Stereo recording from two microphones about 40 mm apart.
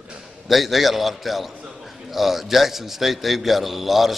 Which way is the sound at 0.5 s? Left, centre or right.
Centre.